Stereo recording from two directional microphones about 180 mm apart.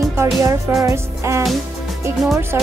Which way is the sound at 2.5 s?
15° right (ahead or behind).